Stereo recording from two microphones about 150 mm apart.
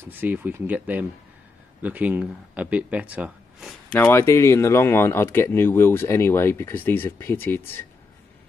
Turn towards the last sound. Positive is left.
turn(degrees=15)  # may be behind; listen again after turning